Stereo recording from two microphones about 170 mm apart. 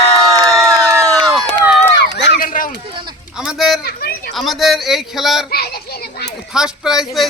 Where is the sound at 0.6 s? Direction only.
15° right (ahead or behind).